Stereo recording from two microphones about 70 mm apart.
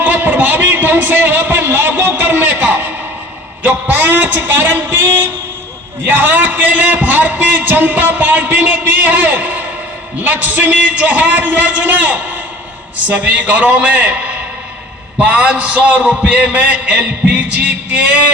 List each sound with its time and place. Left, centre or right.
0.0 s a man's voice: right